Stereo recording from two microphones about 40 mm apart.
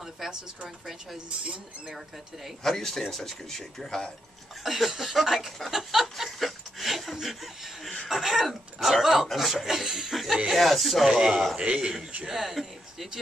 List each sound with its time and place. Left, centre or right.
0.0 s a sound: centre
1.4 s speech: right
2.6 s speech: centre
4.6 s speech: centre
6.4 s a sound: centre
7.2 s speech: centre
11.1 s speech: centre
11.5 s speech: right
12.3 s speech: centre